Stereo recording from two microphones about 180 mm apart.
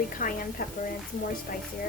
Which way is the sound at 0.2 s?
50° left (ahead or behind).